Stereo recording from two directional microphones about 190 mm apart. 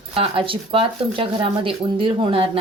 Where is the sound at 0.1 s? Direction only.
30° right (ahead or behind).